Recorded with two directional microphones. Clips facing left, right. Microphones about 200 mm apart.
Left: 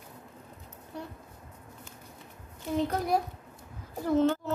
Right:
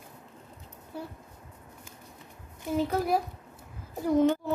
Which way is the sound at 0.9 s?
5° right (ahead or behind).